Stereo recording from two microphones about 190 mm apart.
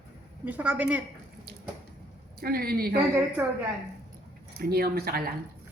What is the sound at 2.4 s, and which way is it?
Speech, 50° right (ahead or behind).